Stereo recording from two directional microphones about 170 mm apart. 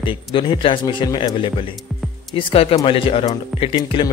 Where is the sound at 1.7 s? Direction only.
Centre (ahead or behind).